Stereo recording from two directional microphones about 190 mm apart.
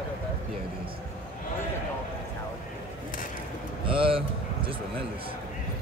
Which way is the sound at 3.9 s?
30° right (ahead or behind).